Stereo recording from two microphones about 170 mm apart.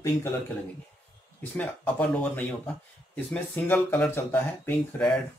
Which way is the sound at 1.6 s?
10° left (ahead or behind).